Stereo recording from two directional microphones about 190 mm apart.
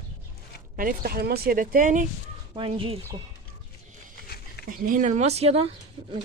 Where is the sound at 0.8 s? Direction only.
50° right (ahead or behind).